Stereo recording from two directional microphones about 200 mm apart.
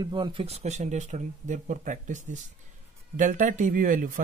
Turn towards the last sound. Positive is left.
turn(degrees=-40)  # may be behind; listen again after turning